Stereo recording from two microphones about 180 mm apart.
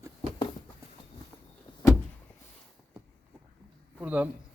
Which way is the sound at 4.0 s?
10° right (ahead or behind).